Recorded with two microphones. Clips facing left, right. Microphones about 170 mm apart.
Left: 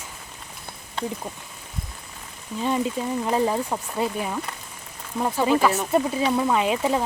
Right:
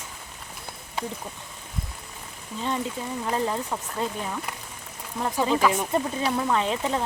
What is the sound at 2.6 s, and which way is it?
Speech, 15° left (ahead or behind).